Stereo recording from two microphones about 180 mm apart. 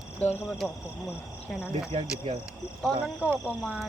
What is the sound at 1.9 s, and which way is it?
Speech, 35° right (ahead or behind).